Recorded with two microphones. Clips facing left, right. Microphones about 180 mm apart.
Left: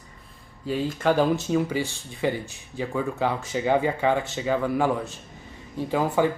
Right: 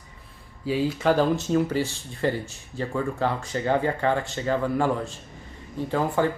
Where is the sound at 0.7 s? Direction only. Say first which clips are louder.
Right 1 dB; centre (ahead or behind).